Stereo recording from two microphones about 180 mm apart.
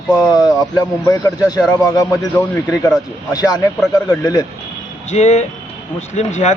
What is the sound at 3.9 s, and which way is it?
Speech, 20° left (ahead or behind).